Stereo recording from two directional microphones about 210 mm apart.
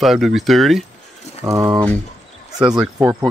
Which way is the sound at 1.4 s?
15° right (ahead or behind).